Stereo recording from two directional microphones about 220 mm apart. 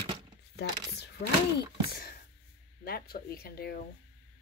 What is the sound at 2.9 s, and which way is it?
Speech, 45° left (ahead or behind).